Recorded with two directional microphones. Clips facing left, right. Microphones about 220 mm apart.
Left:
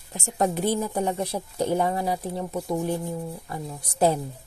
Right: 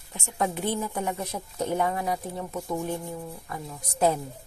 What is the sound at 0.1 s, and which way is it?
Speech, 40° left (ahead or behind).